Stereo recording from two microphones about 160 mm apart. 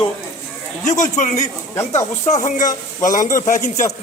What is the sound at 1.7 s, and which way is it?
Speech, 15° left (ahead or behind).